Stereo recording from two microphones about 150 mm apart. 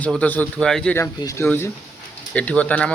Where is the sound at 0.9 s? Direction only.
20° left (ahead or behind).